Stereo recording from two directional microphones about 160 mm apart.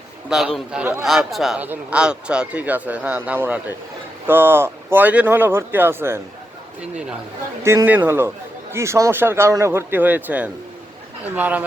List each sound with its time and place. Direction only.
0.3 s a man's voice: 5° right (ahead or behind)
7.6 s speech: 15° right (ahead or behind)